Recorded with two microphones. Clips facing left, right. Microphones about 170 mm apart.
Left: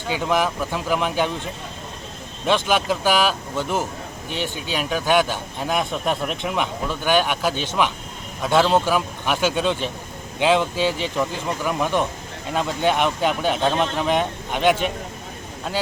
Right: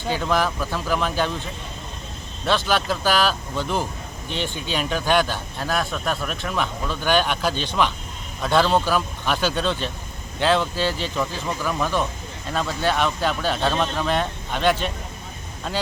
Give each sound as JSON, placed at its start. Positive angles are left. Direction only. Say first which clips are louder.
{"t": 0.1, "sound": "speech", "louder": "left 1 dB", "side_deg": 15}
{"t": 2.6, "sound": "speech", "louder": "left 2 dB", "side_deg": 15}